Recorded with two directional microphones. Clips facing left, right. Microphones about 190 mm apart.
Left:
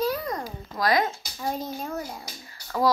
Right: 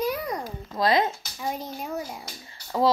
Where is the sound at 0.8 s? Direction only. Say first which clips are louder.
Right 1 dB; 25° right (ahead or behind).